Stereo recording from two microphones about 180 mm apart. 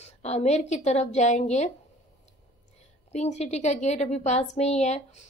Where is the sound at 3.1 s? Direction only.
40° left (ahead or behind).